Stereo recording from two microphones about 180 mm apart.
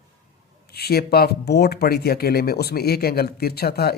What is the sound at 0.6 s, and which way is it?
Speech, 60° left (ahead or behind).